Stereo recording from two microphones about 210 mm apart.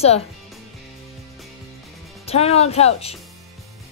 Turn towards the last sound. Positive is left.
turn(degrees=30)  # may be behind; listen again after turning